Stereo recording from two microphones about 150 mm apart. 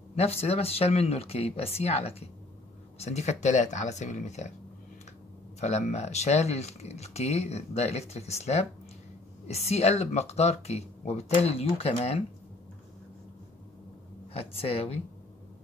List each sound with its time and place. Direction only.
0.1 s speech: 45° left (ahead or behind)
5.6 s speech: 50° left (ahead or behind)
14.3 s a woman's voice: 40° left (ahead or behind)